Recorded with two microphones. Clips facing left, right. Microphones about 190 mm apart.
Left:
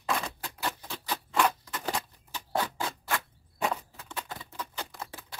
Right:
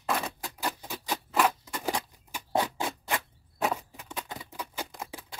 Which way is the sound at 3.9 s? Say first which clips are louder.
Right 1 dB; 15° right (ahead or behind).